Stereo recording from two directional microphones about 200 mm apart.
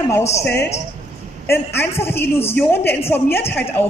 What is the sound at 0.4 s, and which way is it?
A woman's voice, 15° left (ahead or behind).